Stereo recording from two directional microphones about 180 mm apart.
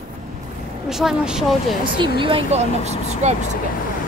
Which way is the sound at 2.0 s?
30° right (ahead or behind).